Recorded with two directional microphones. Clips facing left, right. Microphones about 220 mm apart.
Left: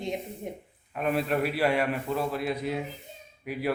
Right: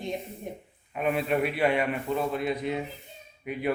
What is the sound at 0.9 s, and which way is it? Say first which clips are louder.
Speech: right 1 dB; 5° right (ahead or behind).